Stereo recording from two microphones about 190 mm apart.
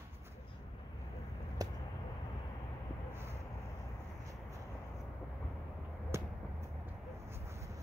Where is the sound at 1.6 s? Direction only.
20° right (ahead or behind).